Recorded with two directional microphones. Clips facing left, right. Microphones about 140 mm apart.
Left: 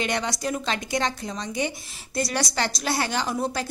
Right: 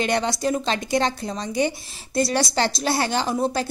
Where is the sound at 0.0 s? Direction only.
30° right (ahead or behind).